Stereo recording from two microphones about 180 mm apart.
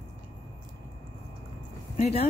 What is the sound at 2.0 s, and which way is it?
Speech, 35° left (ahead or behind).